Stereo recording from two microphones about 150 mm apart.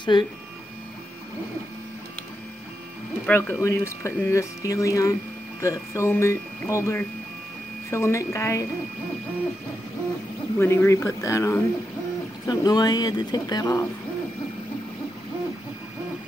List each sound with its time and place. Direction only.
0.1 s speech: 30° left (ahead or behind)
3.3 s speech: 15° left (ahead or behind)
10.6 s speech: 15° left (ahead or behind)